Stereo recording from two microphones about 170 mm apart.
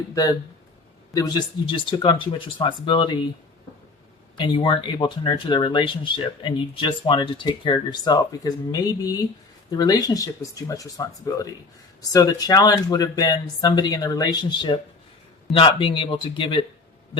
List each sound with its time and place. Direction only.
0.1 s speech: 20° left (ahead or behind)
4.4 s a man's voice: 30° left (ahead or behind)